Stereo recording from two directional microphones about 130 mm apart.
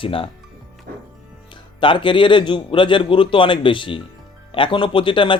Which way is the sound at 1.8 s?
40° left (ahead or behind).